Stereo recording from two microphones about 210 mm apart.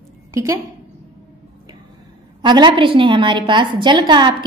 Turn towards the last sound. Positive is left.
turn(degrees=-20)  # may be behind; listen again after turning